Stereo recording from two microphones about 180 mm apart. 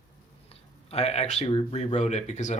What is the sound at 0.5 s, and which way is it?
Speech, 35° left (ahead or behind).